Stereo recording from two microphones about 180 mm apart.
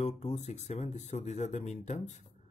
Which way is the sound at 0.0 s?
35° left (ahead or behind).